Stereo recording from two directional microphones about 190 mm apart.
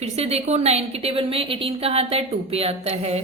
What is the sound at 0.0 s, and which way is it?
A woman's voice, 35° right (ahead or behind).